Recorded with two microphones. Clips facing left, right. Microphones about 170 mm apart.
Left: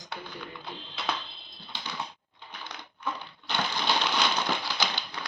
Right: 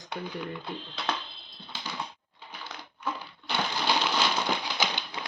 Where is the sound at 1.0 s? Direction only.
Centre (ahead or behind).